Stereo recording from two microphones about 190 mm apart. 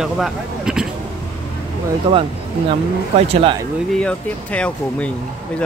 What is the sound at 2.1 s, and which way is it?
Speech, 30° right (ahead or behind).